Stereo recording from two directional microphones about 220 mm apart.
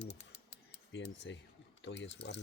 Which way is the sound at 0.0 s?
50° left (ahead or behind).